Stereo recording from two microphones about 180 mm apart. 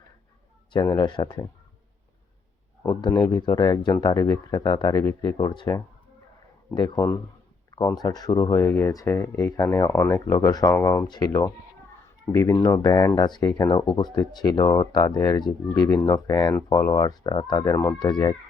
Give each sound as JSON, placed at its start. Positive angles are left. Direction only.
{"t": 0.7, "sound": "speech", "side_deg": 25}
{"t": 2.9, "sound": "speech", "side_deg": 25}